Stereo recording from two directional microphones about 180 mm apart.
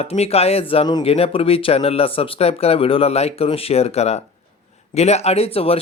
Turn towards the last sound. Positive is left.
turn(degrees=35)  # may be behind; listen again after turning